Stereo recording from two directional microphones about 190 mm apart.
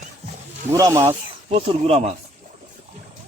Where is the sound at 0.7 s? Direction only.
20° right (ahead or behind).